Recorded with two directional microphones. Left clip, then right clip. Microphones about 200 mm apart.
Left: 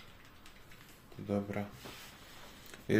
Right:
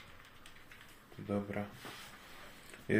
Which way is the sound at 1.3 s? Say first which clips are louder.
Left 2 dB; 10° left (ahead or behind).